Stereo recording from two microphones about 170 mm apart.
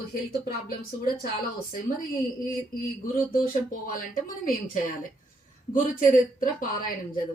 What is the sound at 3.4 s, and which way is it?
Speech, 55° left (ahead or behind).